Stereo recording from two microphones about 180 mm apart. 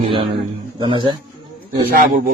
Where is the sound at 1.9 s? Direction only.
55° right (ahead or behind).